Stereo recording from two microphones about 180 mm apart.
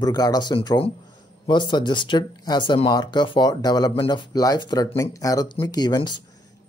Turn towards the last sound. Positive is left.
turn(degrees=20)  # may be behind; listen again after turning